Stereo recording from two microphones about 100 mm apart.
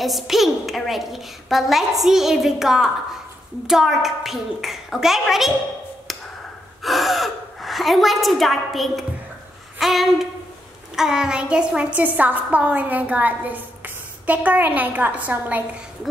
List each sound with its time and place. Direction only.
0.0 s a woman's voice: centre (ahead or behind)
6.8 s gasp: centre (ahead or behind)
9.8 s a woman's voice: centre (ahead or behind)